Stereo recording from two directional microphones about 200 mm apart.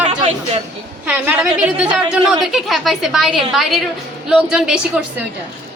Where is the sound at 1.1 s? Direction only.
5° right (ahead or behind).